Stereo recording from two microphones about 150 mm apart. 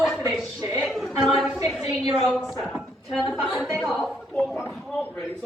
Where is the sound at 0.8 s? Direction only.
Centre (ahead or behind).